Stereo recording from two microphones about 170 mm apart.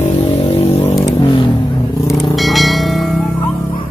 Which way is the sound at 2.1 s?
Centre (ahead or behind).